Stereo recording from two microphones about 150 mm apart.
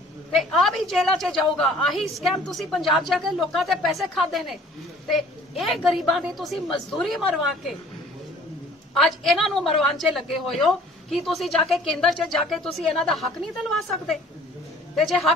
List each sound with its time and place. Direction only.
0.3 s a woman's voice: centre (ahead or behind)
5.6 s a woman's voice: centre (ahead or behind)
8.9 s a woman's voice: centre (ahead or behind)